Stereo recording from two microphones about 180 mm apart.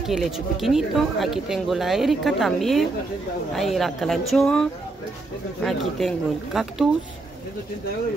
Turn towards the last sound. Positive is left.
turn(degrees=0)  # may be behind; listen again after turning